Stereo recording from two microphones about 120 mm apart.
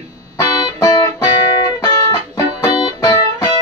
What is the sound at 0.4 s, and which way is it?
Music, 30° left (ahead or behind).